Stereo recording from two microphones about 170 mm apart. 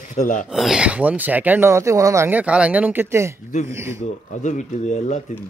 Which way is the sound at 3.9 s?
45° left (ahead or behind).